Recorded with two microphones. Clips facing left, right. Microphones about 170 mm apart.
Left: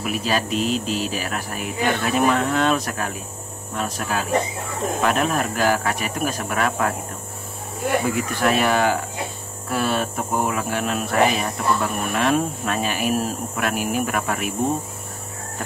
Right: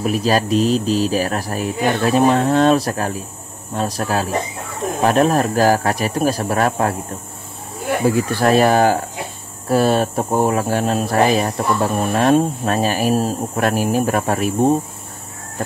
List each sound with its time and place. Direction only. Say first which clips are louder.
0.0 s speech: right 6 dB; 35° right (ahead or behind)
8.0 s speech: right 5 dB; 35° right (ahead or behind)